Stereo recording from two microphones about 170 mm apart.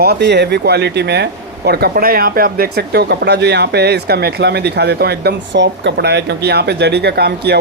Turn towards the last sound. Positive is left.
turn(degrees=-70)  # may be behind; listen again after turning